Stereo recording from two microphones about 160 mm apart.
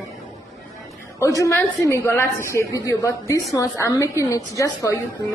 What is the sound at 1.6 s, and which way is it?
A woman's voice, 15° left (ahead or behind).